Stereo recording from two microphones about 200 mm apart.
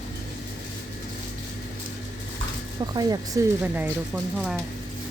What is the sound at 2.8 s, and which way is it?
Speech, 20° right (ahead or behind).